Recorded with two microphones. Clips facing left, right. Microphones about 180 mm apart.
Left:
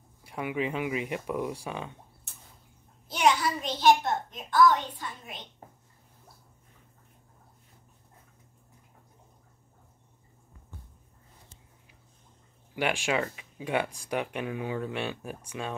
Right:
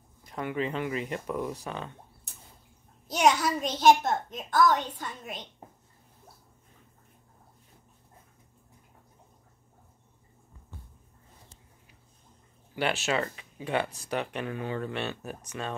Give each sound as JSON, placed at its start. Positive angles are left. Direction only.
{"t": 0.2, "sound": "speech", "side_deg": 10}
{"t": 3.1, "sound": "a sound", "side_deg": -45}
{"t": 3.8, "sound": "a woman's voice", "side_deg": -45}
{"t": 12.7, "sound": "speech", "side_deg": 10}